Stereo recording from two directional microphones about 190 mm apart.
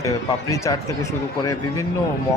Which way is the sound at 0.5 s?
15° left (ahead or behind).